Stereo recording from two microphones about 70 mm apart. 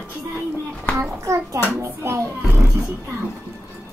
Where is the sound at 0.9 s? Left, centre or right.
Right.